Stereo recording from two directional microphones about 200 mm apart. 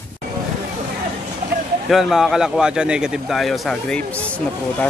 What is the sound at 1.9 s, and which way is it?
Speech, centre (ahead or behind).